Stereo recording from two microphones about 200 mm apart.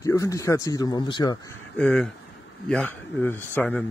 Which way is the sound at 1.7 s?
5° left (ahead or behind).